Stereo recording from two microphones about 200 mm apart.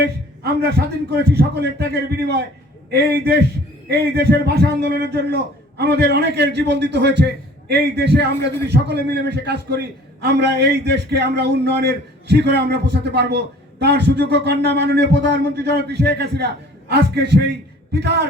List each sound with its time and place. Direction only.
0.4 s a man's voice: 50° right (ahead or behind)